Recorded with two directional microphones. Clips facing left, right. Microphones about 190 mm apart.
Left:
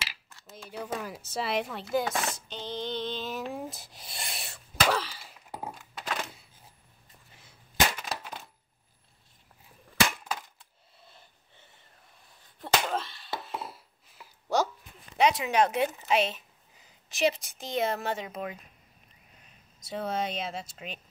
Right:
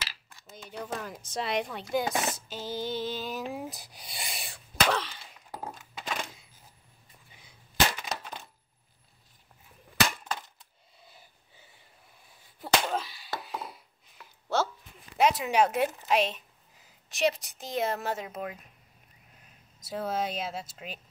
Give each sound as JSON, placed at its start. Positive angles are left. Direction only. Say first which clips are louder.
{"t": 0.6, "sound": "speech", "louder": "left 1 dB", "side_deg": 5}
{"t": 2.0, "sound": "speech", "louder": "right 1 dB", "side_deg": -20}
{"t": 2.3, "sound": "a sound", "louder": "right 1 dB", "side_deg": -5}
{"t": 7.2, "sound": "cap gun", "louder": "even", "side_deg": 0}
{"t": 8.2, "sound": "coin", "louder": "even", "side_deg": 5}
{"t": 11.1, "sound": "snort", "louder": "right 1 dB", "side_deg": -5}
{"t": 12.5, "sound": "a sound", "louder": "even", "side_deg": 0}
{"t": 15.1, "sound": "a woman's voice", "louder": "even", "side_deg": 0}
{"t": 19.8, "sound": "speech", "louder": "even", "side_deg": -5}